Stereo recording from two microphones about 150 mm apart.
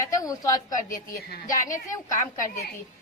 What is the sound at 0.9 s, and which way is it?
Speech, 80° left.